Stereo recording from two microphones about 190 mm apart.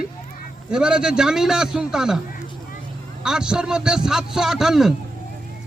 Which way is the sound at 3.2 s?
5° right (ahead or behind).